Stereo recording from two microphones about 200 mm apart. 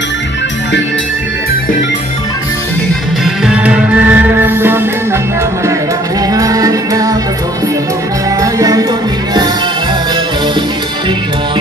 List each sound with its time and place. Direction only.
3.4 s music: 5° right (ahead or behind)
6.3 s music: 15° right (ahead or behind)
8.4 s music: 15° right (ahead or behind)